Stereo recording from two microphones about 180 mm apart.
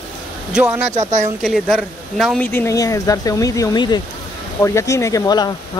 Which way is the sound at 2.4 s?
15° left (ahead or behind).